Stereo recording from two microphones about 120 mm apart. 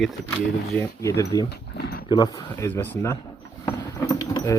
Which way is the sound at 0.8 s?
25° left (ahead or behind).